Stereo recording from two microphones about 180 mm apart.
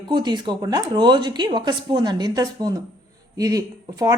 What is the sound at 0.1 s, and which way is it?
Speech, 25° right (ahead or behind).